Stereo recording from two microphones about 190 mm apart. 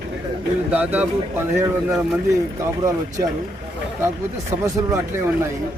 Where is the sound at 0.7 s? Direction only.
10° right (ahead or behind).